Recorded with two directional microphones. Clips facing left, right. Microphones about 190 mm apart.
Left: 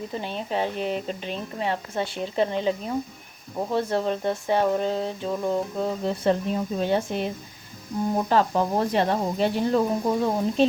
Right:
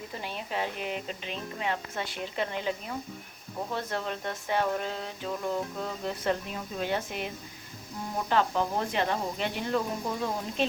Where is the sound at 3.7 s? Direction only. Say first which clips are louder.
Left 10 dB; 30° left (ahead or behind).